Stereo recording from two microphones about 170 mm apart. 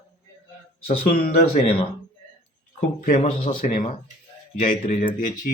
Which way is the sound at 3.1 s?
50° left (ahead or behind).